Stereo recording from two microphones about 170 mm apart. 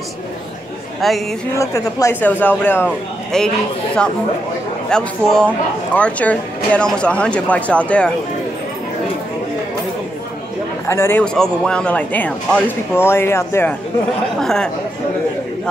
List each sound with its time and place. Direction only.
1.0 s a man's voice: centre (ahead or behind)
1.6 s speech: 20° left (ahead or behind)
4.8 s a man's voice: 5° left (ahead or behind)
10.9 s speech: 15° left (ahead or behind)
14.4 s a man's voice: 5° left (ahead or behind)